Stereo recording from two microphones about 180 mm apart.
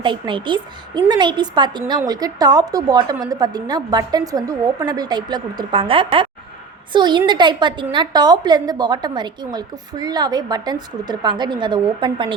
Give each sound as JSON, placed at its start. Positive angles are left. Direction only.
{"t": 0.0, "sound": "a woman's voice", "side_deg": -25}